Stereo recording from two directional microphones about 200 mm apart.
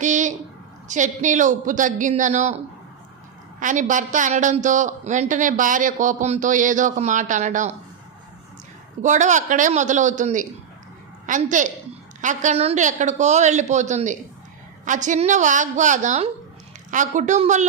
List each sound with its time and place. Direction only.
0.0 s a sound: 40° right (ahead or behind)
0.9 s a woman's voice: 35° right (ahead or behind)
3.6 s a woman's voice: 40° right (ahead or behind)
9.0 s a woman's voice: 35° right (ahead or behind)